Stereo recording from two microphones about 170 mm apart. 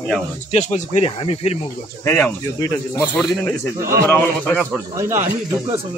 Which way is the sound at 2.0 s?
15° left (ahead or behind).